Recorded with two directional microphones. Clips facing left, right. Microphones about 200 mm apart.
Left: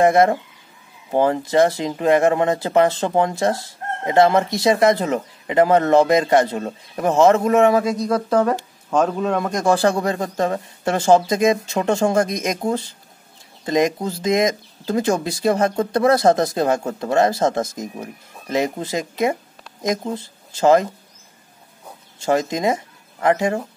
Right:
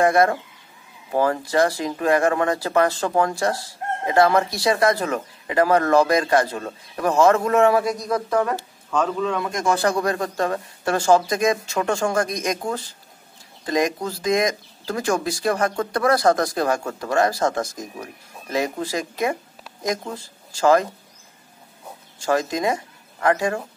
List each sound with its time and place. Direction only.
0.0 s speech: 20° left (ahead or behind)
8.9 s speech: 40° left (ahead or behind); by 20.8 s 20° left (ahead or behind)
22.2 s speech: 20° left (ahead or behind)